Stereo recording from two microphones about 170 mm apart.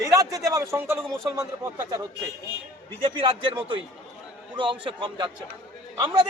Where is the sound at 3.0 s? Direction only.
35° right (ahead or behind).